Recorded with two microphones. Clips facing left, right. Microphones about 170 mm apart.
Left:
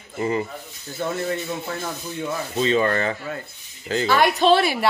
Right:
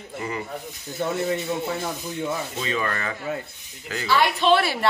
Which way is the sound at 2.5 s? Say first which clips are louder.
Left 7 dB; 30° left (ahead or behind).